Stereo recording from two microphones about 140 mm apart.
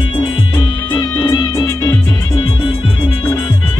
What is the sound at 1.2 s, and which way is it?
Music, 35° left (ahead or behind).